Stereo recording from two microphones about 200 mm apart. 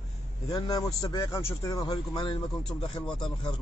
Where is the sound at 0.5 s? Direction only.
20° left (ahead or behind).